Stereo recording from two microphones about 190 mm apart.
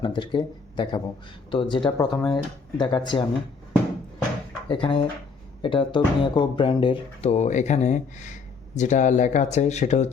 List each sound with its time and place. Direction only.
0.0 s speech: 25° left (ahead or behind)
4.7 s speech: 25° left (ahead or behind)